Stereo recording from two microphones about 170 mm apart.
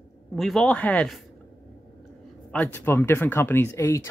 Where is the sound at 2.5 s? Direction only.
10° left (ahead or behind).